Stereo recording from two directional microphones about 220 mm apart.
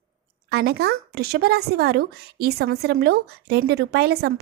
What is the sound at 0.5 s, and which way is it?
Speech, 45° right (ahead or behind).